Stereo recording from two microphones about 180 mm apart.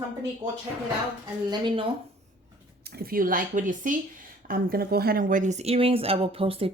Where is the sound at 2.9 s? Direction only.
55° right (ahead or behind).